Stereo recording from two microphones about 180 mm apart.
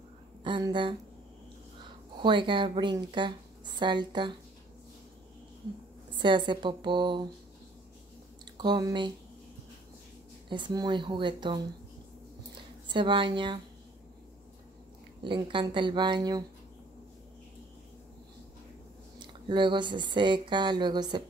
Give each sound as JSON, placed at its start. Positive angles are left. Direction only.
{"t": 0.4, "sound": "speech", "side_deg": -25}
{"t": 2.1, "sound": "speech", "side_deg": -25}
{"t": 6.1, "sound": "speech", "side_deg": -25}
{"t": 8.5, "sound": "speech", "side_deg": -25}
{"t": 10.5, "sound": "speech", "side_deg": -25}
{"t": 15.2, "sound": "speech", "side_deg": -25}
{"t": 19.1, "sound": "speech", "side_deg": -25}